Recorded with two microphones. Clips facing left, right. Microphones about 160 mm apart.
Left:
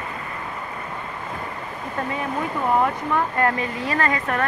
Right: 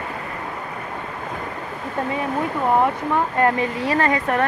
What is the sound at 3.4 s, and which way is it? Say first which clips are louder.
Speech: right 3 dB; 30° right (ahead or behind).